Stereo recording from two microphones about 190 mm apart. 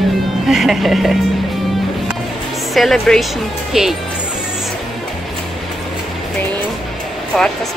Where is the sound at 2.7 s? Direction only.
Centre (ahead or behind).